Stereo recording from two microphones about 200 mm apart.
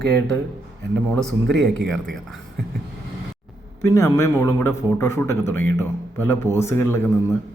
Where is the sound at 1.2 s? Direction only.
Centre (ahead or behind).